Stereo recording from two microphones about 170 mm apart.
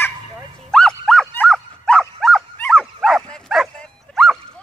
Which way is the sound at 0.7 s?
5° left (ahead or behind).